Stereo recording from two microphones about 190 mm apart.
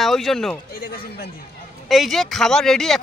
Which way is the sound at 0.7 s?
50° left (ahead or behind).